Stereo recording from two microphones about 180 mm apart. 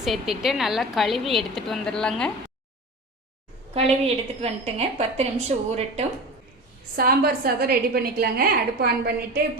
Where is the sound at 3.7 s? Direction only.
35° right (ahead or behind).